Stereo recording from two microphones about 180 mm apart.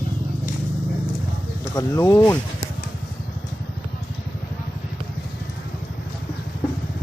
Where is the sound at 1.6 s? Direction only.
20° left (ahead or behind).